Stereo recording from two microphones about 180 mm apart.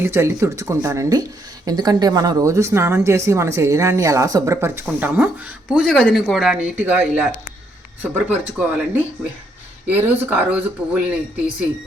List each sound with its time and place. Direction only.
0.0 s speech: 15° right (ahead or behind)
9.8 s speech: 10° right (ahead or behind)